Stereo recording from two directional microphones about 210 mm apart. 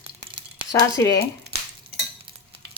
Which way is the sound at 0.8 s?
15° left (ahead or behind).